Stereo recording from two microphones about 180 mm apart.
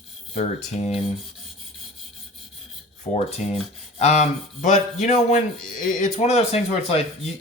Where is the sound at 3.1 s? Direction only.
40° left (ahead or behind).